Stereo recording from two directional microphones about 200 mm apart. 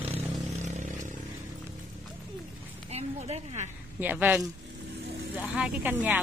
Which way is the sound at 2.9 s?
30° right (ahead or behind).